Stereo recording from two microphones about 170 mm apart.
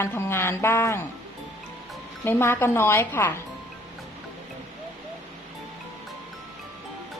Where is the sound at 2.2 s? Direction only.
15° left (ahead or behind).